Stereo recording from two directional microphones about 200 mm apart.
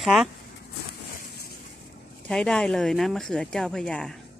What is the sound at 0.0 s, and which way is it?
Speech, centre (ahead or behind).